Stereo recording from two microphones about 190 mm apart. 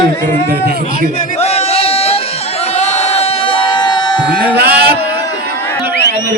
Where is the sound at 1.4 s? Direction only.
35° left (ahead or behind).